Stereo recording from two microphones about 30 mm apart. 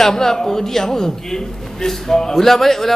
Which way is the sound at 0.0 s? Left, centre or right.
Centre.